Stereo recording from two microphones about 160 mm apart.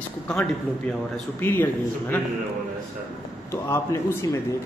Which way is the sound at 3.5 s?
15° left (ahead or behind).